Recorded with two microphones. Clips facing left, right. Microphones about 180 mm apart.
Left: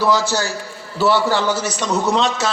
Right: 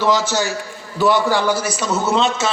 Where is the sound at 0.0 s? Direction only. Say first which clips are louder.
Even; 20° right (ahead or behind).